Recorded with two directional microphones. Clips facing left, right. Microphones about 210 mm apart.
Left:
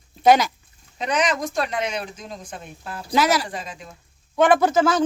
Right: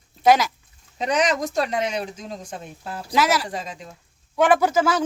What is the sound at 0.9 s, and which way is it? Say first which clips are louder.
Speech: right 1 dB; 40° right (ahead or behind).